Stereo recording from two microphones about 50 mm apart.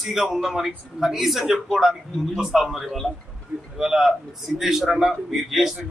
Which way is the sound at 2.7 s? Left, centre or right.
Centre.